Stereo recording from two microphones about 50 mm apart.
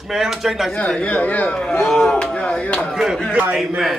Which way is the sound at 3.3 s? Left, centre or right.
Right.